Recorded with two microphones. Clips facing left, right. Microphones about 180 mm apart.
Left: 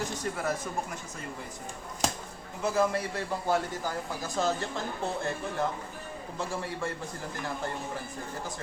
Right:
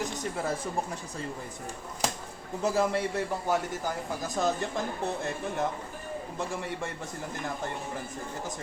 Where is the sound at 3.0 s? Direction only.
20° right (ahead or behind).